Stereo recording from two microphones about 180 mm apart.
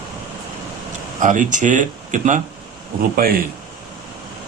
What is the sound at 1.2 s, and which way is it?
Speech, 45° right (ahead or behind).